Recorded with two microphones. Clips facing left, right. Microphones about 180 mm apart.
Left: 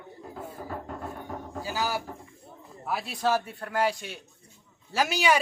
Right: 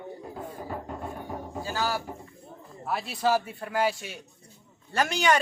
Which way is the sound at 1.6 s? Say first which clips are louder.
Right 1 dB; 15° left (ahead or behind).